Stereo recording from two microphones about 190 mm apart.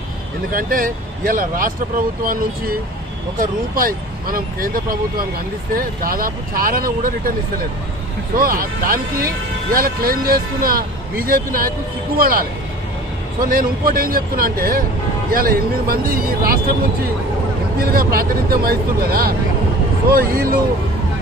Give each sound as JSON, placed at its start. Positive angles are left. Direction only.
{"t": 0.5, "sound": "speech", "side_deg": -45}
{"t": 8.4, "sound": "speech", "side_deg": -50}
{"t": 13.5, "sound": "speech", "side_deg": -50}
{"t": 17.7, "sound": "speech", "side_deg": -50}